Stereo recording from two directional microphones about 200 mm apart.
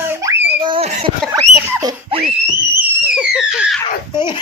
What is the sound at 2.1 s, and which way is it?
Speech, 30° right (ahead or behind).